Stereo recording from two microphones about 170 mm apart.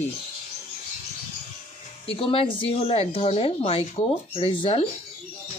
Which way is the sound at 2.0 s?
35° left (ahead or behind).